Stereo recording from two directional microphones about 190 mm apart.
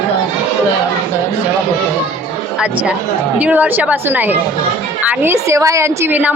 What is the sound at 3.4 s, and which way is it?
A woman's voice, 10° right (ahead or behind).